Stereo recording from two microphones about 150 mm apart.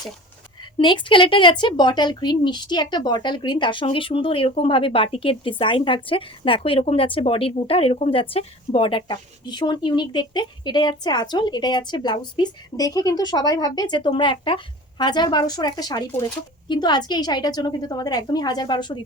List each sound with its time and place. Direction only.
0.8 s speech: 30° left (ahead or behind)